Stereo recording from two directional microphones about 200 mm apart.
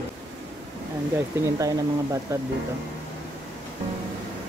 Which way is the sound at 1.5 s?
15° right (ahead or behind).